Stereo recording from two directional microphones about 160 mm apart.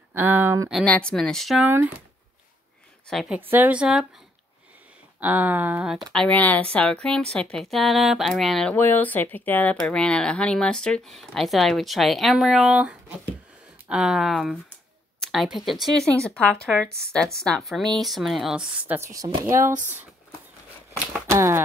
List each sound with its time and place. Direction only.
0.1 s speech: 10° right (ahead or behind)
0.8 s speech: 5° left (ahead or behind)
1.7 s speech: 10° right (ahead or behind)
3.1 s a woman's voice: centre (ahead or behind)
3.3 s speech: 10° right (ahead or behind)
5.2 s speech: 10° right (ahead or behind)
6.1 s a woman's voice: 10° left (ahead or behind)
8.7 s speech: 10° left (ahead or behind); by 19.7 s 15° right (ahead or behind)
21.3 s speech: 15° right (ahead or behind)